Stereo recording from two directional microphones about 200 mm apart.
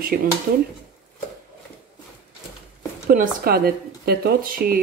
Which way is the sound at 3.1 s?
45° right (ahead or behind).